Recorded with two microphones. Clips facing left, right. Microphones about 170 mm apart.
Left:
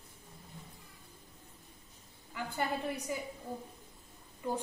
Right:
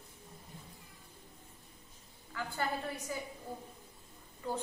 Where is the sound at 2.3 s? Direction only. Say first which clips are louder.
Left 1 dB; 15° left (ahead or behind).